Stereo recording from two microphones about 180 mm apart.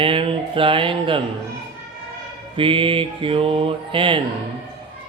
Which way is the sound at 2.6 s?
30° right (ahead or behind).